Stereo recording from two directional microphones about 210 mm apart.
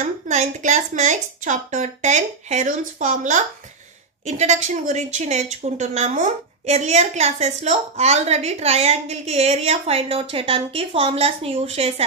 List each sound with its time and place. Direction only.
0.0 s a woman's voice: 35° right (ahead or behind)